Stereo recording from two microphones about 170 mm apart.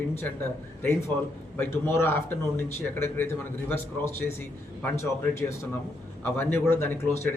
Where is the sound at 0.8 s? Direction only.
15° left (ahead or behind).